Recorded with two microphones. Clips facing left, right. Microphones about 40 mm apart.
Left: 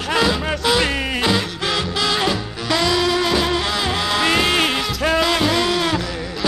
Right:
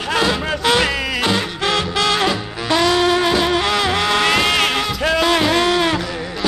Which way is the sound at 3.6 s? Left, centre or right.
Centre.